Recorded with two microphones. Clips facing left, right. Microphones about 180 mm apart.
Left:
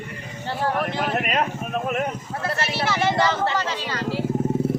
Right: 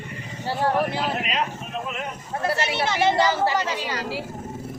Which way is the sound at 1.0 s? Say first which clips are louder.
Left 3 dB; 50° left (ahead or behind).